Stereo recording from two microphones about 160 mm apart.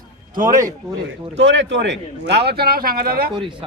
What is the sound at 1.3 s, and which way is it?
A man's voice, 90° right.